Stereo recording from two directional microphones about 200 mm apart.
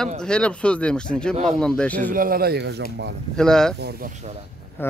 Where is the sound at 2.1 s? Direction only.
45° right (ahead or behind).